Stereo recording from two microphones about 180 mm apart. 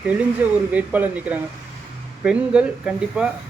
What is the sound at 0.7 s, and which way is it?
Speech, 10° right (ahead or behind).